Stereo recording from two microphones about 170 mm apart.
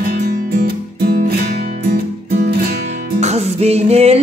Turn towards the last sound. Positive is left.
turn(degrees=-40)  # may be behind; listen again after turning